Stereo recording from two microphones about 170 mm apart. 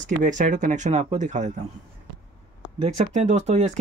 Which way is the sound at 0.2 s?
50° right (ahead or behind).